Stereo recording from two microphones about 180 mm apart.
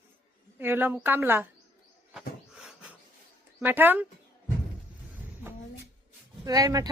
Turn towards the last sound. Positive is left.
turn(degrees=-20)  # may be behind; listen again after turning